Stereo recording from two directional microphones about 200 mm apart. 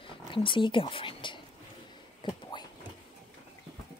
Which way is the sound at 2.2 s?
20° left (ahead or behind).